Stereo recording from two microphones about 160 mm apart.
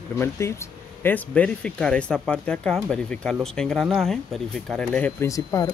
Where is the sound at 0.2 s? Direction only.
15° left (ahead or behind).